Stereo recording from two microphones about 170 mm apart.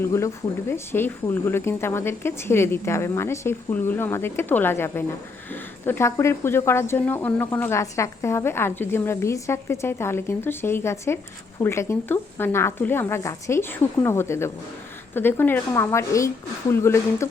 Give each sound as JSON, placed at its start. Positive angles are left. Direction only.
{"t": 0.0, "sound": "speech", "side_deg": 15}